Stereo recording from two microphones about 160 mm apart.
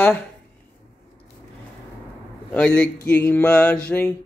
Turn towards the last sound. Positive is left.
turn(degrees=10)  # may be behind; listen again after turning